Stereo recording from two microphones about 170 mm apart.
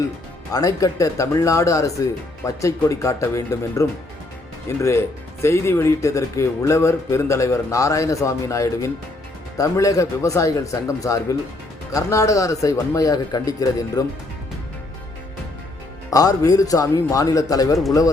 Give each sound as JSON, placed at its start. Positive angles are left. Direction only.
{"t": 0.5, "sound": "speech", "side_deg": 20}
{"t": 16.0, "sound": "speech", "side_deg": 20}